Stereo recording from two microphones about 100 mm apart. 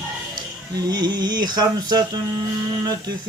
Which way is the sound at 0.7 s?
45° right (ahead or behind).